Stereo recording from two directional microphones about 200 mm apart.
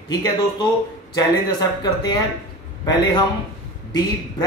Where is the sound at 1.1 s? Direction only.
20° left (ahead or behind).